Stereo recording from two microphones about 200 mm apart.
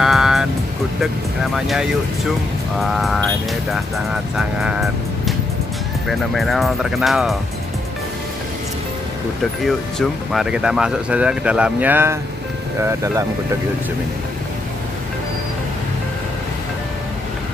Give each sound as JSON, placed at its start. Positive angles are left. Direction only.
{"t": 0.0, "sound": "music", "side_deg": 0}
{"t": 1.0, "sound": "speech", "side_deg": 0}
{"t": 9.7, "sound": "speech", "side_deg": 0}